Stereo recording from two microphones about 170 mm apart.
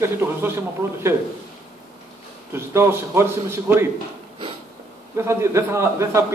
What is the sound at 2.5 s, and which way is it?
A man's voice, 15° right (ahead or behind).